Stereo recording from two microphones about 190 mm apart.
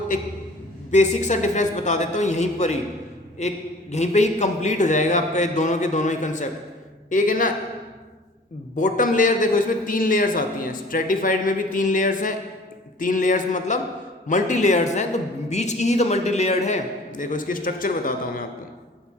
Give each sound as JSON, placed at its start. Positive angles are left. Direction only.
{"t": 0.9, "sound": "a man's voice", "side_deg": 40}
{"t": 8.7, "sound": "a man's voice", "side_deg": 45}